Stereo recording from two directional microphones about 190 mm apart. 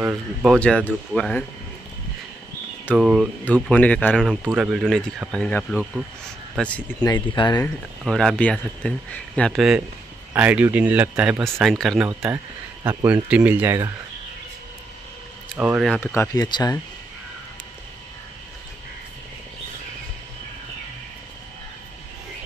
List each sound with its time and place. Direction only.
0.0 s speech: 5° right (ahead or behind)
3.0 s speech: 5° right (ahead or behind)
7.0 s speech: 20° left (ahead or behind)
8.0 s speech: centre (ahead or behind); by 13.9 s 15° right (ahead or behind)
15.5 s speech: 10° right (ahead or behind)
16.1 s speech: 15° left (ahead or behind)